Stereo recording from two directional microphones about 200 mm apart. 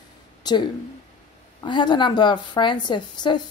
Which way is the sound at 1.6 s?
25° left (ahead or behind).